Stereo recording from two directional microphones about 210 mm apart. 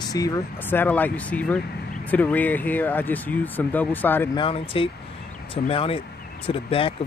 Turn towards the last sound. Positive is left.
turn(degrees=25)  # may be behind; listen again after turning